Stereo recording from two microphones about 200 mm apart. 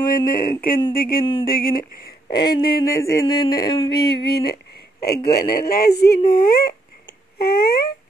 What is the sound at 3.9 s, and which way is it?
Speech, 55° left (ahead or behind).